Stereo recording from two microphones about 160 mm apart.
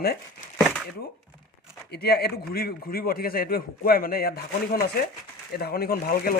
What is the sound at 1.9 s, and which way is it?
A man's voice, 80° left.